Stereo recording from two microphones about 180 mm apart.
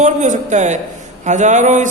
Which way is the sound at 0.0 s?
40° right (ahead or behind).